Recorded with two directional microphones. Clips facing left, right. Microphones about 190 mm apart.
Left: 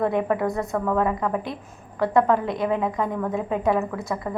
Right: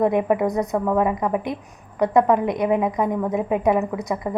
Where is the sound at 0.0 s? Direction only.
15° right (ahead or behind).